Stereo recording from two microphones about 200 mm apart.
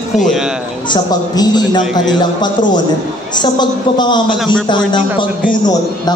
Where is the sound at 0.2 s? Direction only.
Centre (ahead or behind).